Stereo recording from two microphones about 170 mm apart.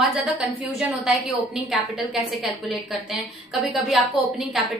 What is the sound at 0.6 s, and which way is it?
A woman's voice, 5° right (ahead or behind).